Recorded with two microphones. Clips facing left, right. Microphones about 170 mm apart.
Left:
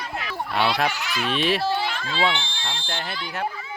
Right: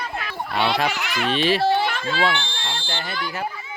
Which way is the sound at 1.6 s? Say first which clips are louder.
Right 5 dB; 60° right (ahead or behind).